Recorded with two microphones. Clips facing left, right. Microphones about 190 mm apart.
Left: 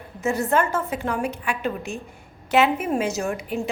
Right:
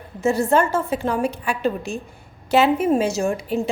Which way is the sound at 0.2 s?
30° right (ahead or behind).